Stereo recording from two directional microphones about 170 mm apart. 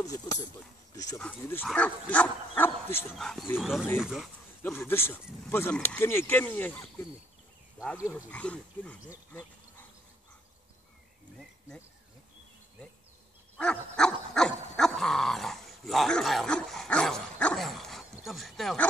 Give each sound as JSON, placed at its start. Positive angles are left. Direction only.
{"t": 0.0, "sound": "speech", "side_deg": 20}
{"t": 3.2, "sound": "speech", "side_deg": 0}
{"t": 4.6, "sound": "speech", "side_deg": 10}
{"t": 8.1, "sound": "speech", "side_deg": 5}
{"t": 13.6, "sound": "dog", "side_deg": 5}
{"t": 18.2, "sound": "speech", "side_deg": 0}